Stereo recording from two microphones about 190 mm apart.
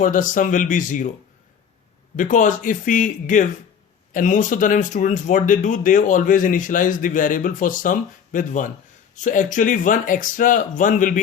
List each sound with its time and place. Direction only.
0.0 s speech: 45° left (ahead or behind)
2.1 s speech: 45° left (ahead or behind)